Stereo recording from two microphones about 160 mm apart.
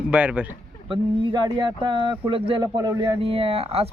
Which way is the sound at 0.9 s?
30° right (ahead or behind).